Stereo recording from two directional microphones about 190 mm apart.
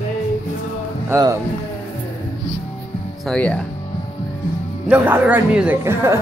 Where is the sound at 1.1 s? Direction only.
15° right (ahead or behind).